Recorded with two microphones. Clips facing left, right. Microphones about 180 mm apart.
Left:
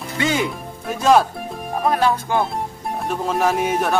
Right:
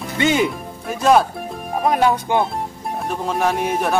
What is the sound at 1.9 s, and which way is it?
Speech, 15° right (ahead or behind).